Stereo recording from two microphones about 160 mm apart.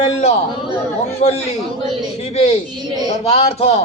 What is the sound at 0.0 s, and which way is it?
A man's voice, 40° left (ahead or behind).